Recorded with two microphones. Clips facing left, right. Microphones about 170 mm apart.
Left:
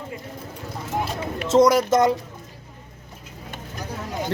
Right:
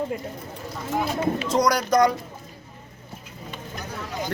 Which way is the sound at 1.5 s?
25° left (ahead or behind).